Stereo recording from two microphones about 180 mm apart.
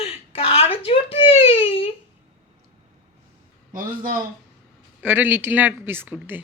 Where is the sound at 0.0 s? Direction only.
35° left (ahead or behind).